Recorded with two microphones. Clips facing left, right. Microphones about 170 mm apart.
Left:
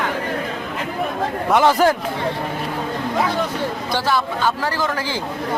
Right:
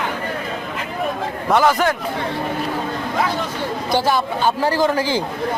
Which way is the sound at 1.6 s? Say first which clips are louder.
Left 3 dB; 30° left (ahead or behind).